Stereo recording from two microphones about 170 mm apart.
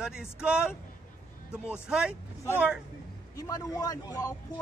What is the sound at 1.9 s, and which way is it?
Speech, 5° right (ahead or behind).